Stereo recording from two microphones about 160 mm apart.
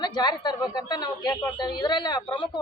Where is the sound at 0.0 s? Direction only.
25° left (ahead or behind).